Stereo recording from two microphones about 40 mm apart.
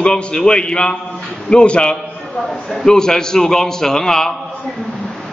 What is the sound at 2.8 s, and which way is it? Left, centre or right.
A man's voice, centre.